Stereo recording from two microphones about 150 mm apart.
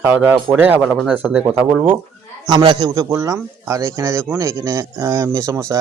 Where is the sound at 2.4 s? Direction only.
30° right (ahead or behind).